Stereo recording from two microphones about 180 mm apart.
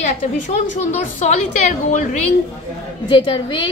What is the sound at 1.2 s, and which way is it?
Speech, 40° left (ahead or behind).